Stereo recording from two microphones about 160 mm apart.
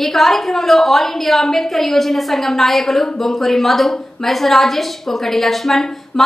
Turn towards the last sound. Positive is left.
turn(degrees=5)  # may be behind; listen again after turning